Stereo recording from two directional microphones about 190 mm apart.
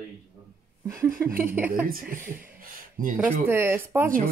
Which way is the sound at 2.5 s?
45° right (ahead or behind).